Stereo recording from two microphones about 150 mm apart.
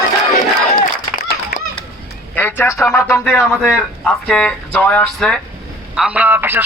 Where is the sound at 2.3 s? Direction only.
10° left (ahead or behind).